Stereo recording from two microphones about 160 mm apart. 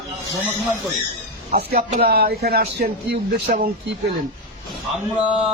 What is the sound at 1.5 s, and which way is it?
Speech, 75° right (ahead or behind).